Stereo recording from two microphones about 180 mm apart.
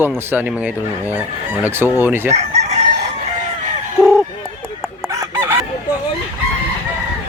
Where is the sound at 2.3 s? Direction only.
40° right (ahead or behind).